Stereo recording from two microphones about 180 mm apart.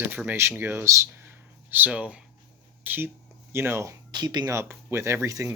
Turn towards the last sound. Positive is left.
turn(degrees=-15)  # may be behind; listen again after turning